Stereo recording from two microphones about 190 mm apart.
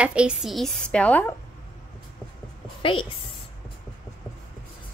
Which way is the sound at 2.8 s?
25° left (ahead or behind).